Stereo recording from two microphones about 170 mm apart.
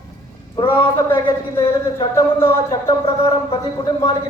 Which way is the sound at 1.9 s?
30° left (ahead or behind).